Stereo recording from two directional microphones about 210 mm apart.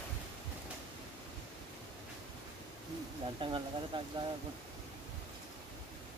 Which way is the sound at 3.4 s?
25° right (ahead or behind).